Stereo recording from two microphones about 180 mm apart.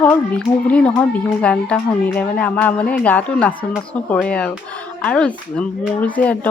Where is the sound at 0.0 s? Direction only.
10° left (ahead or behind).